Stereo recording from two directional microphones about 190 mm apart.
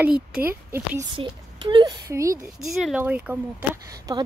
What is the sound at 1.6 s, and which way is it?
Speech, 20° right (ahead or behind).